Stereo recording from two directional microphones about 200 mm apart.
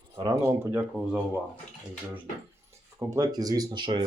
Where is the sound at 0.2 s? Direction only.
15° right (ahead or behind).